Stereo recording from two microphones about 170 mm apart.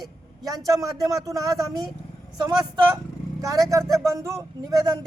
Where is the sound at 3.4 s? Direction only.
20° right (ahead or behind).